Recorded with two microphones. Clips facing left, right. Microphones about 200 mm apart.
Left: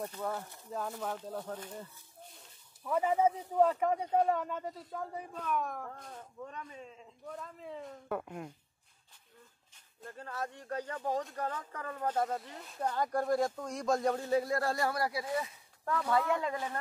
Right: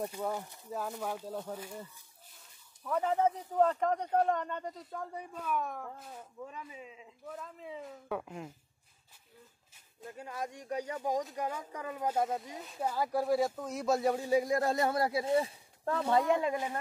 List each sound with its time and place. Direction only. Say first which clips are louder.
0.0 s speech: right 2 dB; 10° right (ahead or behind)
2.8 s speech: left 1 dB; 5° left (ahead or behind)
10.0 s speech: right 1 dB; 10° right (ahead or behind)